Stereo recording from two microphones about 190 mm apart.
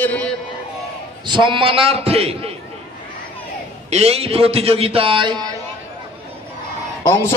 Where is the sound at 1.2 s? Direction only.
25° right (ahead or behind).